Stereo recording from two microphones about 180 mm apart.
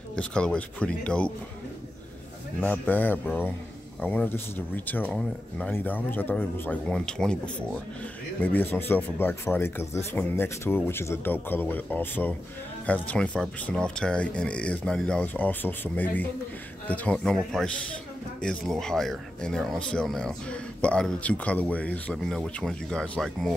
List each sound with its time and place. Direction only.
0.1 s speech: 5° left (ahead or behind)
2.6 s speech: 10° left (ahead or behind)